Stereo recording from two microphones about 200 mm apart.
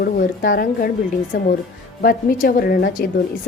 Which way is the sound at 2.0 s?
45° left (ahead or behind).